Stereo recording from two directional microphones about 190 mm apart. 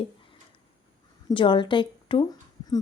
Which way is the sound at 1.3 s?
25° left (ahead or behind).